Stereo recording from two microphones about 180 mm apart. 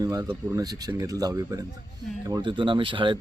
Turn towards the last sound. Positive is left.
turn(degrees=-25)  # may be behind; listen again after turning